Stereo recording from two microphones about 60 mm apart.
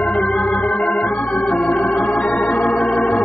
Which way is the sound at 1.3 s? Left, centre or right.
Centre.